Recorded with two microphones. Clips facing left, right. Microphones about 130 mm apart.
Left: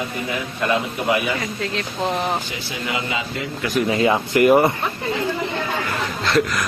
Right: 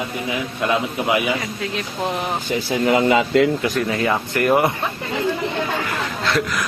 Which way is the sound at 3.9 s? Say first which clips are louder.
Left 3 dB; 20° left (ahead or behind).